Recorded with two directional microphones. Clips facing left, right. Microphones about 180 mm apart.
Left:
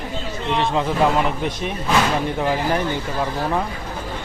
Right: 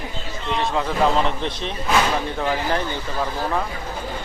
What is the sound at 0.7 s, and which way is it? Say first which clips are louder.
A man's voice: even; 10° left (ahead or behind).